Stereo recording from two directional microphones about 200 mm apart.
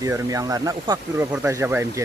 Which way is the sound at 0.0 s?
15° right (ahead or behind).